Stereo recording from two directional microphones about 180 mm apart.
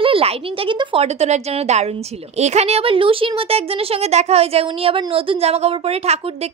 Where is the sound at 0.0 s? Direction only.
30° right (ahead or behind).